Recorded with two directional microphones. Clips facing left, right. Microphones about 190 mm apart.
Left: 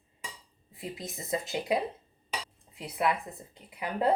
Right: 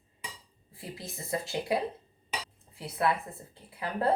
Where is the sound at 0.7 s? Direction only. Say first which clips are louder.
Left 3 dB; 20° left (ahead or behind).